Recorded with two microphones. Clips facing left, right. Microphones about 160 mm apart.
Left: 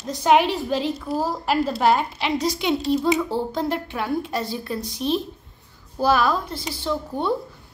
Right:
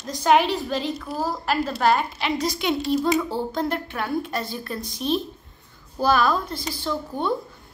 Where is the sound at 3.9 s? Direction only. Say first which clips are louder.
Left 1 dB; 25° left (ahead or behind).